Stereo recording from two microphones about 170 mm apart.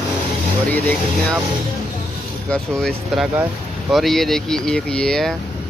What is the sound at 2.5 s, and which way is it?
Speech, 5° left (ahead or behind).